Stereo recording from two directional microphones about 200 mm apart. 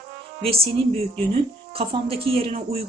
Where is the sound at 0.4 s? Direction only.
30° right (ahead or behind).